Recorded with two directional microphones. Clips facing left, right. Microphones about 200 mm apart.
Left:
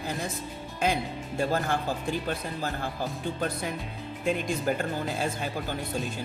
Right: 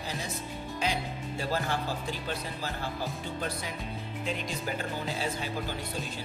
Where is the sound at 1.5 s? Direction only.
50° left (ahead or behind).